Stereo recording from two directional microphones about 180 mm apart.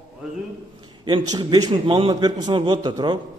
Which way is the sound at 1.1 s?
25° right (ahead or behind).